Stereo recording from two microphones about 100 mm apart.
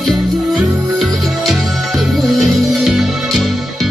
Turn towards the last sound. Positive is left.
turn(degrees=0)  # may be behind; listen again after turning